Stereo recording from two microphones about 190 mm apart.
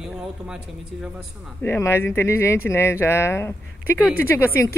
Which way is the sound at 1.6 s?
15° left (ahead or behind).